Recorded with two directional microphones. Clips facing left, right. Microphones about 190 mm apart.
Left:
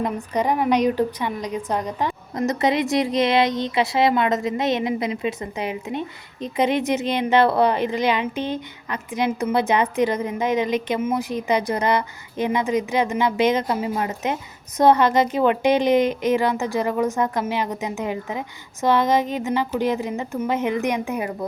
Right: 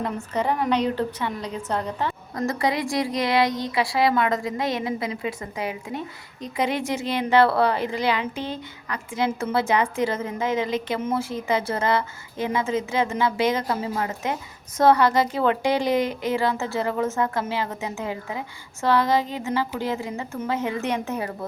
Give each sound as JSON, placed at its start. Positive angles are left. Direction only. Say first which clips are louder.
{"t": 0.0, "sound": "a woman's voice", "louder": "left 3 dB", "side_deg": 15}